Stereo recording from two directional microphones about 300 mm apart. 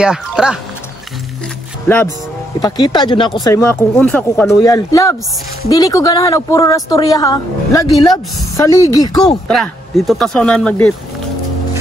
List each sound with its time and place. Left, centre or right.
0.0 s speech: centre
2.6 s a woman's voice: centre
9.5 s speech: centre